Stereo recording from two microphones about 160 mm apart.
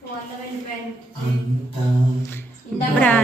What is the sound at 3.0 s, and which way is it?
Speech, 10° left (ahead or behind).